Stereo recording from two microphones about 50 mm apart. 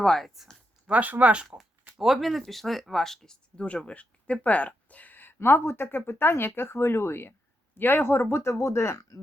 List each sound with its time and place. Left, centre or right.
0.0 s speech: centre
0.9 s speech: right
2.0 s speech: centre
3.9 s speech: left
5.4 s speech: left
8.3 s speech: left